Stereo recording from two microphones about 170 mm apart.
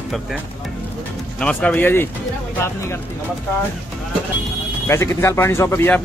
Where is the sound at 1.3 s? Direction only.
5° left (ahead or behind).